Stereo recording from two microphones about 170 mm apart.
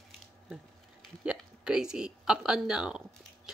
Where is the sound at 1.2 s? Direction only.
5° right (ahead or behind).